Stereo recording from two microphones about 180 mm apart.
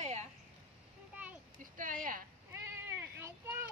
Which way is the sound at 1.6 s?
50° right (ahead or behind).